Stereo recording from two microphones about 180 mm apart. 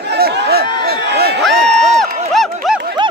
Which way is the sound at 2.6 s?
Centre (ahead or behind).